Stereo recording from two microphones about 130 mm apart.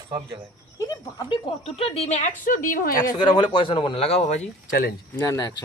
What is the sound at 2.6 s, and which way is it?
Speech, 90° left.